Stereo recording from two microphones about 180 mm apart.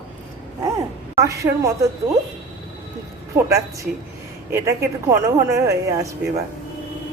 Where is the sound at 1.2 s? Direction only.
15° right (ahead or behind).